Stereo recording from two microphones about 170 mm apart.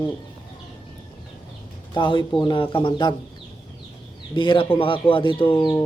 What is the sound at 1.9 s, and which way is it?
A man's voice, 25° left (ahead or behind).